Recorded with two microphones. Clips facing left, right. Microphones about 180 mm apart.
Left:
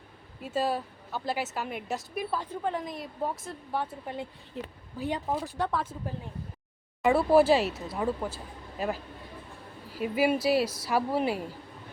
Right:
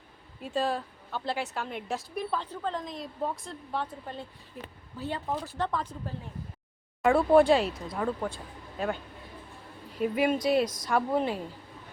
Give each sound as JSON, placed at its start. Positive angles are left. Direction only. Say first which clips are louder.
{"t": 0.4, "sound": "a woman's voice", "louder": "left 1 dB", "side_deg": 5}
{"t": 4.6, "sound": "a woman's voice", "louder": "left 4 dB", "side_deg": 25}